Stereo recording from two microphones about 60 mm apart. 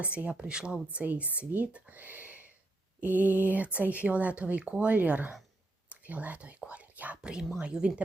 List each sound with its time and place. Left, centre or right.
0.0 s speech: right
1.7 s a sound: right
3.0 s speech: right